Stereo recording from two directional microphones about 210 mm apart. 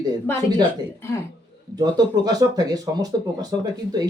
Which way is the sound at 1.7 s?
20° right (ahead or behind).